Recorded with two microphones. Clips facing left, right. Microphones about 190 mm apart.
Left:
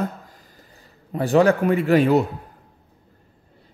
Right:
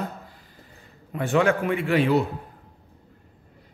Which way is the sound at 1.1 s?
35° left (ahead or behind).